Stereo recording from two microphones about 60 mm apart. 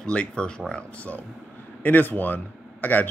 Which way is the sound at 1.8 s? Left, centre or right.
Left.